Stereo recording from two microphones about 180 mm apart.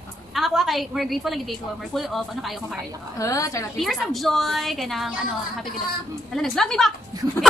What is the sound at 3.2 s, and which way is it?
Speech, 15° left (ahead or behind).